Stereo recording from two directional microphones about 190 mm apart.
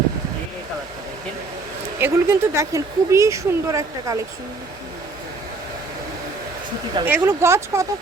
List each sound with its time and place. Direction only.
2.0 s speech: 15° right (ahead or behind)
7.0 s speech: 10° right (ahead or behind)